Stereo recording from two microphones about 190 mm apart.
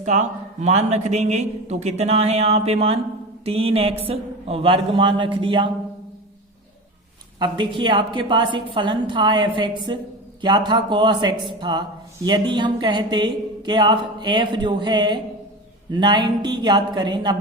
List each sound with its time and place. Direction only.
0.0 s a man's voice: 40° right (ahead or behind)
7.3 s speech: 25° right (ahead or behind)